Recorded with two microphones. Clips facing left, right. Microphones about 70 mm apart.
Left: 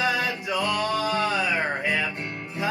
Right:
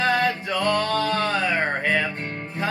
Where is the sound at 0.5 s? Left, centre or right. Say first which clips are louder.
Right 3 dB; centre.